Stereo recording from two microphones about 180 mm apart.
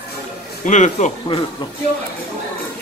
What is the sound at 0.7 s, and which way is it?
Speech, 40° left (ahead or behind).